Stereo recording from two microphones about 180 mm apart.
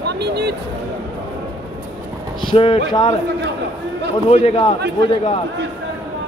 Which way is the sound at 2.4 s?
30° left (ahead or behind).